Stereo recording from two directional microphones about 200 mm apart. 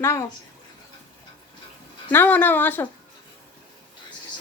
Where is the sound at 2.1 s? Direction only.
10° left (ahead or behind).